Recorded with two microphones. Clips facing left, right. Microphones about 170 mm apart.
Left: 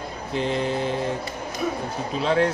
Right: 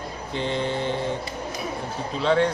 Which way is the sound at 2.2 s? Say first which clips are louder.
Right 1 dB; 5° left (ahead or behind).